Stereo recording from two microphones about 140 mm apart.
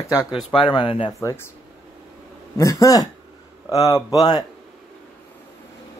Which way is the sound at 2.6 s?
25° left (ahead or behind).